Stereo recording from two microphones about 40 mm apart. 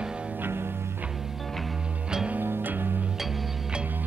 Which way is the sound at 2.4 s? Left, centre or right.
Right.